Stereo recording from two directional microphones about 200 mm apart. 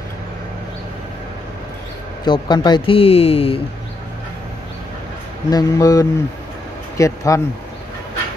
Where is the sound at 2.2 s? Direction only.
20° left (ahead or behind).